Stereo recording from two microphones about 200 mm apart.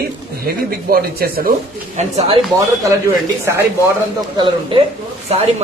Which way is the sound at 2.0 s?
30° right (ahead or behind).